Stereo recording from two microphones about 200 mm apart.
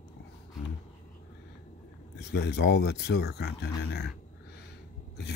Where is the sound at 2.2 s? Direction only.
55° left (ahead or behind).